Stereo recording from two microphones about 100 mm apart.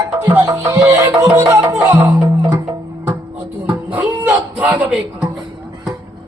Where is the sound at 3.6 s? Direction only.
15° right (ahead or behind).